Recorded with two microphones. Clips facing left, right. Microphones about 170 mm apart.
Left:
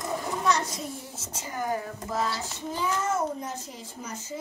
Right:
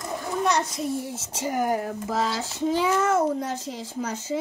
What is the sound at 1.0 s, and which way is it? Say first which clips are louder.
A child's voice: right 9 dB; 90° right.